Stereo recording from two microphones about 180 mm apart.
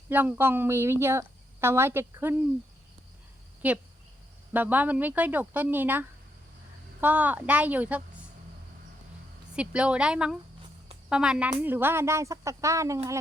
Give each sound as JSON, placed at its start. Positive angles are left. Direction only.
{"t": 0.1, "sound": "speech", "side_deg": -10}
{"t": 3.6, "sound": "speech", "side_deg": -10}
{"t": 9.6, "sound": "speech", "side_deg": -5}